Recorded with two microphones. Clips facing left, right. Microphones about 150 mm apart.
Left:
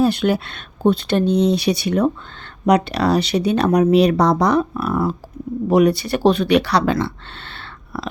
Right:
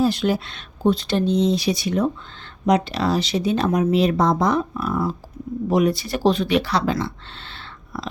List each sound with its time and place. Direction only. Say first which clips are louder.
0.0 s speech: left 3 dB; 60° left (ahead or behind)